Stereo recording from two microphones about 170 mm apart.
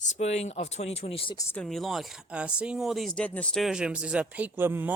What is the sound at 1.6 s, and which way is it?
Speech, centre (ahead or behind).